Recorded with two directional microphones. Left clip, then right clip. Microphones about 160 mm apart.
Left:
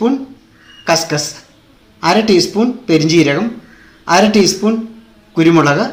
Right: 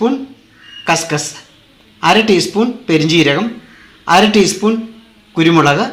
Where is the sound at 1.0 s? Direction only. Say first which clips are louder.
Even; 20° right (ahead or behind).